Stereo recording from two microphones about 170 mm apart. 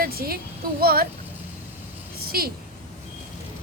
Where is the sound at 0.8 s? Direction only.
60° right (ahead or behind).